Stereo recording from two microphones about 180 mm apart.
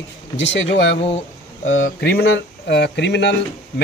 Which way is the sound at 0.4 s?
85° left.